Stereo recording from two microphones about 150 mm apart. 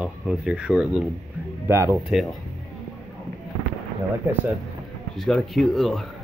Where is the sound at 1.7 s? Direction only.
20° right (ahead or behind).